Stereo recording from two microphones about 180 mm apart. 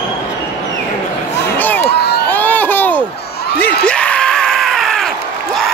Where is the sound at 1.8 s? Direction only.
65° left (ahead or behind).